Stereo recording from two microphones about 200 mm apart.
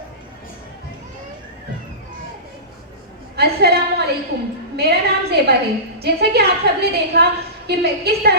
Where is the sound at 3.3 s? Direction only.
55° right (ahead or behind).